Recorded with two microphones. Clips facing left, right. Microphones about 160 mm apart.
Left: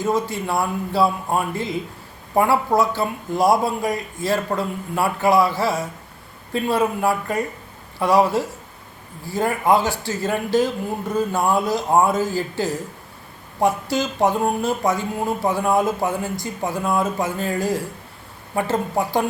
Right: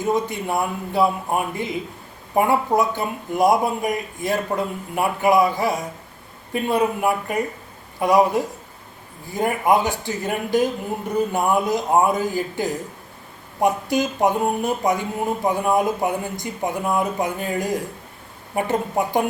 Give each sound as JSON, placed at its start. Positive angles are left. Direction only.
{"t": 0.0, "sound": "a man's voice", "side_deg": -20}